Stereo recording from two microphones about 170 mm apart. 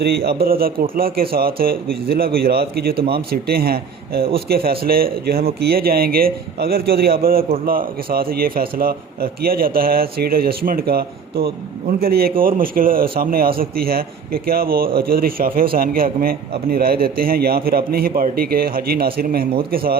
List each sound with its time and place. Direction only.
0.0 s a man's voice: 70° right (ahead or behind)